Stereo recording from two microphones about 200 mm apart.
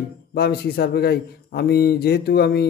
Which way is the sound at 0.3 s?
55° left (ahead or behind).